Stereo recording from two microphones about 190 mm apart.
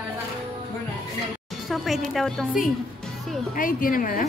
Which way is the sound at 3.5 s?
45° left (ahead or behind).